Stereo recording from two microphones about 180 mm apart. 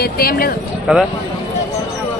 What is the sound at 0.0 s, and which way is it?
Speech, 55° left (ahead or behind).